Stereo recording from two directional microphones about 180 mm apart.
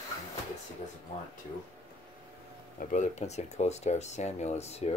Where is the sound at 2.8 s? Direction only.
45° left (ahead or behind).